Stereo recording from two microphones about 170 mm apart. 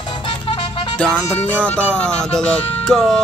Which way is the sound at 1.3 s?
10° left (ahead or behind).